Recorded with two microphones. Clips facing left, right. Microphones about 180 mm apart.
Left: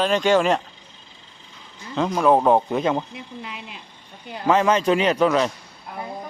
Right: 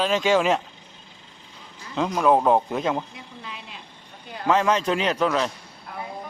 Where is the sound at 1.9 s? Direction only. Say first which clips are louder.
Left 2 dB; centre (ahead or behind).